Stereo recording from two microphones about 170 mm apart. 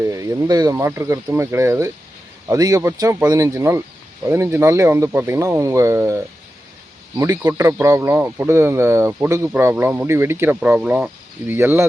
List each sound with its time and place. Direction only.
0.0 s speech: 20° right (ahead or behind)